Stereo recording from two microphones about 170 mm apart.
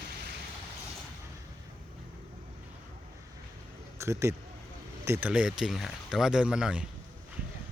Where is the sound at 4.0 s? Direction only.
15° right (ahead or behind).